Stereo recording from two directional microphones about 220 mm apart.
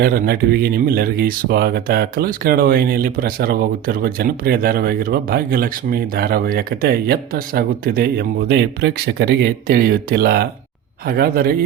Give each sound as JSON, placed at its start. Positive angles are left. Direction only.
{"t": 0.0, "sound": "speech", "side_deg": -45}